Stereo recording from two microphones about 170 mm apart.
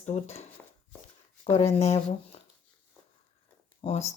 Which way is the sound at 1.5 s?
40° left (ahead or behind).